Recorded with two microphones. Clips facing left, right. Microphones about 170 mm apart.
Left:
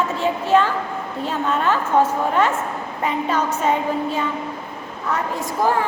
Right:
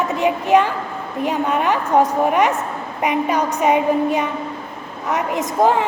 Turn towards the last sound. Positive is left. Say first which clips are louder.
# right 4 dB
turn(degrees=-20)  # may be behind; listen again after turning